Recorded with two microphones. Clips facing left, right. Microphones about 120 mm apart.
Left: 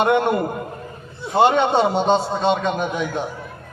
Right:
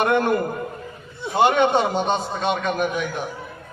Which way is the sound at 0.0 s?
25° left (ahead or behind).